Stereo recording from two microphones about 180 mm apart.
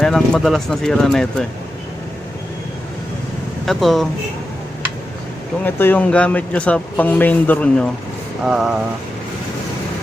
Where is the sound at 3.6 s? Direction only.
Centre (ahead or behind).